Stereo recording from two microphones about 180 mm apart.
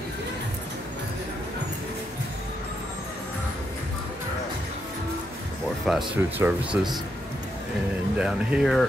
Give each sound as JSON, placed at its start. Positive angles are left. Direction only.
{"t": 5.9, "sound": "speech", "side_deg": 0}
{"t": 8.2, "sound": "speech", "side_deg": -5}